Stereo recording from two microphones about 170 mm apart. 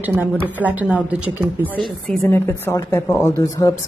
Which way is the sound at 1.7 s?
5° left (ahead or behind).